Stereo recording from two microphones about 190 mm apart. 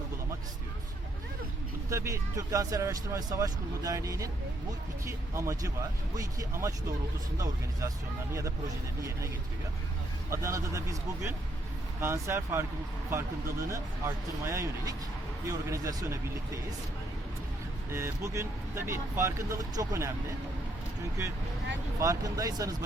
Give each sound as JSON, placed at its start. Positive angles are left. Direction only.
{"t": 1.9, "sound": "speech", "side_deg": -15}
{"t": 10.2, "sound": "speech", "side_deg": -15}
{"t": 17.9, "sound": "speech", "side_deg": -15}
{"t": 21.2, "sound": "speech", "side_deg": -15}